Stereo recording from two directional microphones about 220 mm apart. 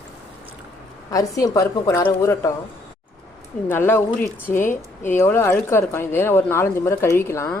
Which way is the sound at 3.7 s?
10° left (ahead or behind).